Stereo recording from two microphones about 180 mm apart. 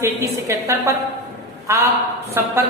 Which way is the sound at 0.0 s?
15° right (ahead or behind).